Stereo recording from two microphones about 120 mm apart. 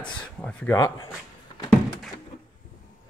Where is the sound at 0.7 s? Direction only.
30° left (ahead or behind).